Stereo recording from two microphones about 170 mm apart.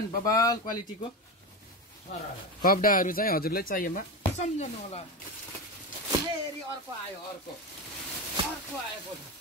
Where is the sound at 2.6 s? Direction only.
55° left (ahead or behind).